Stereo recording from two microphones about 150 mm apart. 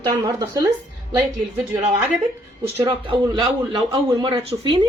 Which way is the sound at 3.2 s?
30° right (ahead or behind).